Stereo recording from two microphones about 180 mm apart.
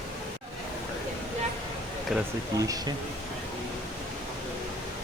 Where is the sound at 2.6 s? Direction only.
20° right (ahead or behind).